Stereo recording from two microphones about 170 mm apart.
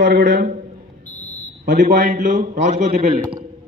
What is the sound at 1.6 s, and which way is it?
A man's voice, 50° right (ahead or behind).